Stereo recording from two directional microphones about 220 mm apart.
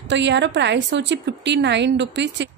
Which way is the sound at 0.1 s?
55° right (ahead or behind).